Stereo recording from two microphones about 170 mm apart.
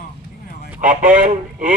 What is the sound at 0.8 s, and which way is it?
Speech, 50° right (ahead or behind).